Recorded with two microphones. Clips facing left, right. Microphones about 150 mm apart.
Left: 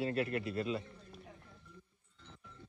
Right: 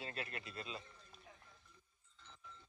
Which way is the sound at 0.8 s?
65° left (ahead or behind).